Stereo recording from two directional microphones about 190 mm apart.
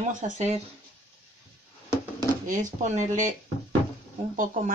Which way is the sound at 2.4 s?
40° right (ahead or behind).